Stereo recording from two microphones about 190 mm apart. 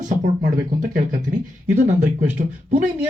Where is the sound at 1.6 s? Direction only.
40° right (ahead or behind).